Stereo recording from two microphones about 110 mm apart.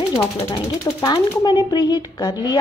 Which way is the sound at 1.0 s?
40° left (ahead or behind).